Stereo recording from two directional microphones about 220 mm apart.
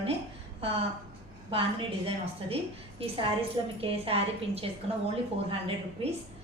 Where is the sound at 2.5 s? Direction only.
25° right (ahead or behind).